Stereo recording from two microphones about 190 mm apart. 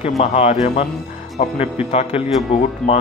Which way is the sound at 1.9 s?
35° left (ahead or behind).